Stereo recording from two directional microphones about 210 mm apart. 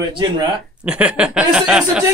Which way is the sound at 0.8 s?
5° right (ahead or behind).